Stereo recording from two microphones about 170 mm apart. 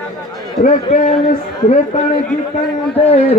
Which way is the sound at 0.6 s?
50° left (ahead or behind).